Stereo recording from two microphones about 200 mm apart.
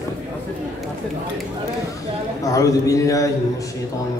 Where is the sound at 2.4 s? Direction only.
15° left (ahead or behind).